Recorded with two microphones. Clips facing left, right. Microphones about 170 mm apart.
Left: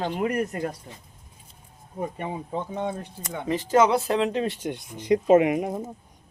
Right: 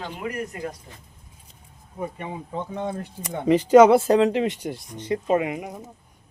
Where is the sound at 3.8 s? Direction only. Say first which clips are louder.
Right 6 dB; 50° right (ahead or behind).